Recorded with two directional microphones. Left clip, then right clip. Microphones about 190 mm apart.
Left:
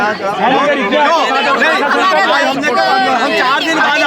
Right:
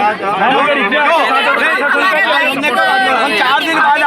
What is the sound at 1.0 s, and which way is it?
Speech, 65° left (ahead or behind).